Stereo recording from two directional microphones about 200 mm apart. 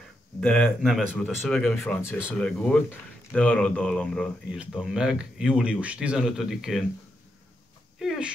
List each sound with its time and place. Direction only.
0.4 s speech: 5° left (ahead or behind)
8.0 s speech: centre (ahead or behind)